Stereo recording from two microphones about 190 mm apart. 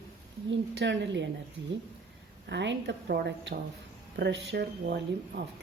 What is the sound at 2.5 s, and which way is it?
A woman's voice, 65° right (ahead or behind).